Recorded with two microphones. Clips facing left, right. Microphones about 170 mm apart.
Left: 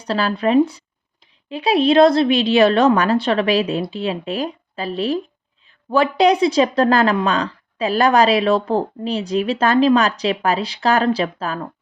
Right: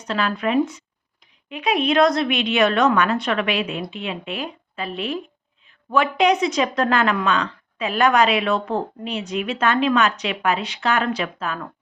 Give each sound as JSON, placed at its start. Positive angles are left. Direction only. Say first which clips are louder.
{"t": 0.0, "sound": "speech", "louder": "left 4 dB", "side_deg": 35}